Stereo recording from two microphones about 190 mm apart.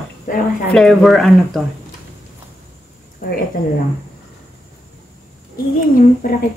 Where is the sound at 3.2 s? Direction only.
50° left (ahead or behind).